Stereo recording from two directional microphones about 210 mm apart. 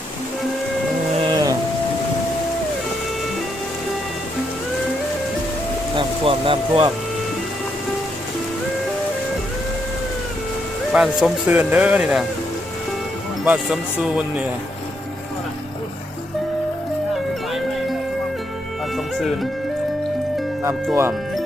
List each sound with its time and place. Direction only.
1.3 s a sound: 20° right (ahead or behind)
6.0 s music: 25° right (ahead or behind)
10.9 s speech: 5° right (ahead or behind)
13.4 s speech: 5° right (ahead or behind)
18.9 s music: centre (ahead or behind)